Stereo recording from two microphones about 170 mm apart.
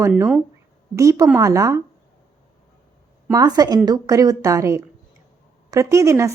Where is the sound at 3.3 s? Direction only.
20° right (ahead or behind).